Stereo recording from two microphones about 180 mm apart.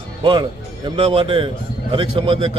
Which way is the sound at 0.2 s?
25° right (ahead or behind).